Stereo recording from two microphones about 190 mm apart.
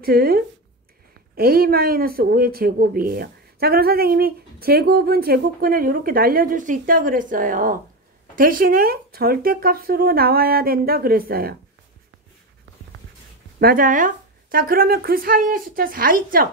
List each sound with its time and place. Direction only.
0.0 s speech: 55° right (ahead or behind)
13.6 s speech: 50° right (ahead or behind)